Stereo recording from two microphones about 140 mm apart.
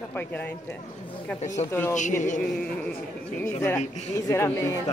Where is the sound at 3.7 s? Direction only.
55° left (ahead or behind).